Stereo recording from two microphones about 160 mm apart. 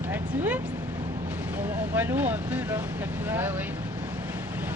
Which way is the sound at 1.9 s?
10° right (ahead or behind).